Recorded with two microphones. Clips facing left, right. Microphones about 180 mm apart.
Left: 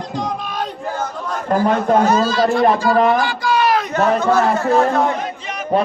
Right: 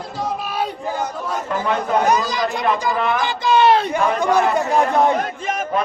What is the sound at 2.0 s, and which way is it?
A man's voice, 15° right (ahead or behind).